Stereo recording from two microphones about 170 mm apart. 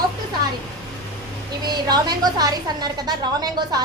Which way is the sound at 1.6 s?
25° right (ahead or behind).